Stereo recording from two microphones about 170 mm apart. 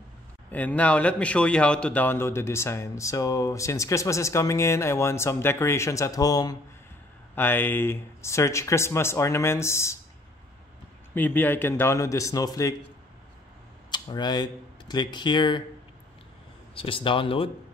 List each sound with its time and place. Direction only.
0.5 s speech: 10° left (ahead or behind)
11.1 s speech: 10° left (ahead or behind)
13.8 s speech: 25° left (ahead or behind)
16.7 s speech: 30° left (ahead or behind)